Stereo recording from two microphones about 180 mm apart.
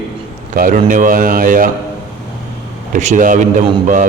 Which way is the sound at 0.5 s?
50° right (ahead or behind).